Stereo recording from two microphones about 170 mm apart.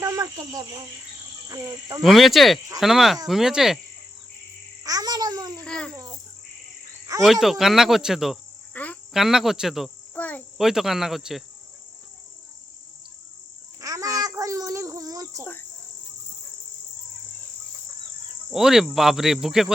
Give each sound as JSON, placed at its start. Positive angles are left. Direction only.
{"t": 0.0, "sound": "cricket", "side_deg": -20}
{"t": 1.5, "sound": "speech", "side_deg": -20}
{"t": 2.0, "sound": "speech", "side_deg": 0}
{"t": 4.8, "sound": "babbling", "side_deg": -20}
{"t": 5.6, "sound": "speech", "side_deg": 5}
{"t": 5.9, "sound": "speech", "side_deg": -20}
{"t": 7.2, "sound": "speech", "side_deg": 0}
{"t": 8.7, "sound": "cricket", "side_deg": 10}
{"t": 9.1, "sound": "speech", "side_deg": 0}
{"t": 10.2, "sound": "insect", "side_deg": 10}
{"t": 10.6, "sound": "speech", "side_deg": 0}
{"t": 13.8, "sound": "a sound", "side_deg": -20}
{"t": 18.5, "sound": "speech", "side_deg": 0}